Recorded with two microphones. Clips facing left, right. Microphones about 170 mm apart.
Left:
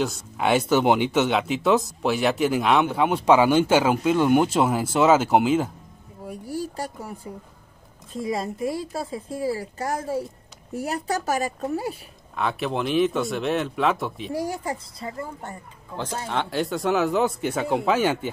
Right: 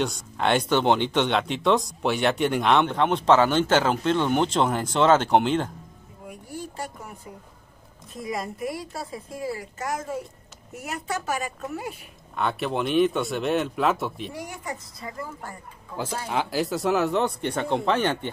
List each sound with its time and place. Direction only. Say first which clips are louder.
0.0 s speech: left 1 dB; 5° left (ahead or behind)
6.2 s a sound: left 6 dB; 35° left (ahead or behind)
8.1 s speech: left 4 dB; 30° left (ahead or behind)
12.4 s speech: even; centre (ahead or behind)
14.3 s speech: left 7 dB; 35° left (ahead or behind)
16.3 s speech: even; 5° right (ahead or behind)